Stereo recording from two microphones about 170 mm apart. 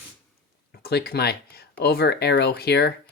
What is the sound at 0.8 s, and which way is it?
Speech, 70° left (ahead or behind).